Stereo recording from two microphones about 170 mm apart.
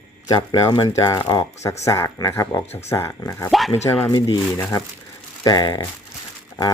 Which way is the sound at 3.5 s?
Centre (ahead or behind).